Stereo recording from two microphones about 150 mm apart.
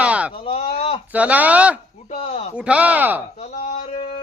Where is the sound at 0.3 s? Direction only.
40° left (ahead or behind).